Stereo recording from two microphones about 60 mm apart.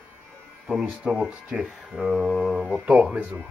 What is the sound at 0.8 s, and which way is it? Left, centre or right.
Speech, centre.